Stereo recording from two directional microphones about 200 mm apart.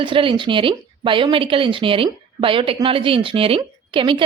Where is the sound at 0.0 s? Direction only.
25° right (ahead or behind).